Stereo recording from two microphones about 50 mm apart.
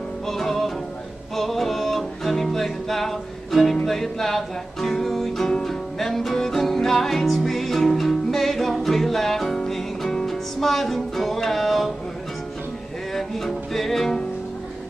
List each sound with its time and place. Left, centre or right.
0.3 s music: centre
13.1 s music: centre